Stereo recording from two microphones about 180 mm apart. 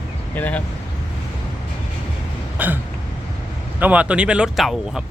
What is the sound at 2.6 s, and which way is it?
Hiccup, 10° right (ahead or behind).